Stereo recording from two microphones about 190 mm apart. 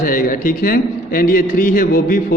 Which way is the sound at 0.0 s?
45° left (ahead or behind).